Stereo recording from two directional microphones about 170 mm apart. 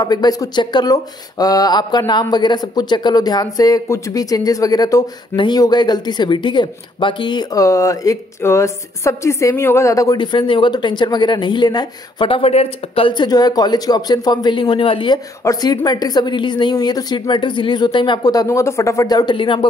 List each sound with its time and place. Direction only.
0.0 s speech: 25° left (ahead or behind)